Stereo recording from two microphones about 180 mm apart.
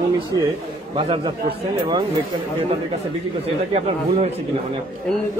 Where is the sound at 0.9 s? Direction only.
30° right (ahead or behind).